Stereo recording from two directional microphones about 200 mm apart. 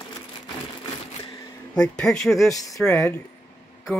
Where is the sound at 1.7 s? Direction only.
5° left (ahead or behind).